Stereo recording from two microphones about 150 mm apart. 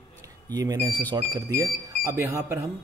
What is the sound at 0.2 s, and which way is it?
Speech, 25° right (ahead or behind).